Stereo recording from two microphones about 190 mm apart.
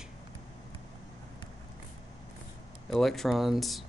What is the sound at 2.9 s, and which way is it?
Speech, centre (ahead or behind).